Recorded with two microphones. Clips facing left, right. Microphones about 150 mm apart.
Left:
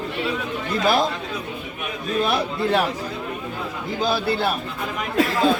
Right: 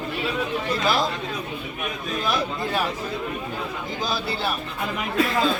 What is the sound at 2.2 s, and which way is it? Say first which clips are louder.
Speech: left 4 dB; 65° left (ahead or behind).